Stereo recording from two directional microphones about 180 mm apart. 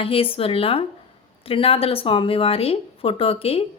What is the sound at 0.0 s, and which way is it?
Speech, 30° left (ahead or behind).